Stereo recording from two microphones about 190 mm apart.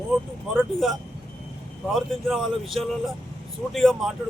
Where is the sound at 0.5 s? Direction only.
Centre (ahead or behind).